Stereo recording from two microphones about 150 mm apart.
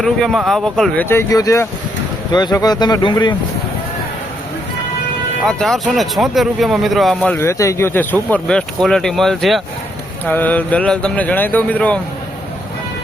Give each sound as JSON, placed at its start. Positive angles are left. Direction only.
{"t": 0.0, "sound": "a man's voice", "side_deg": 0}
{"t": 1.0, "sound": "speech", "side_deg": 20}
{"t": 5.5, "sound": "a man's voice", "side_deg": 5}